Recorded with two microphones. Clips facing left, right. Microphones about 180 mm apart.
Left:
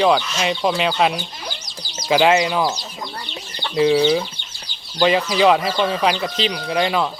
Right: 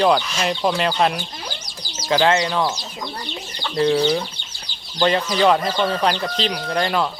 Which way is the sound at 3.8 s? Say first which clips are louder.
Left 2 dB; 5° left (ahead or behind).